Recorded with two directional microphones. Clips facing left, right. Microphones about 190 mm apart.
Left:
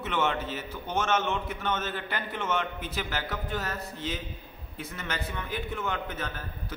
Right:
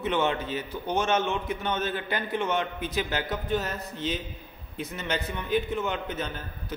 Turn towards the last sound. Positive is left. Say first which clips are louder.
# right 1 dB
turn(degrees=-20)  # may be behind; listen again after turning